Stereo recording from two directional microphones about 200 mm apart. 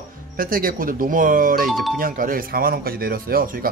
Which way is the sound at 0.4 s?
45° right (ahead or behind).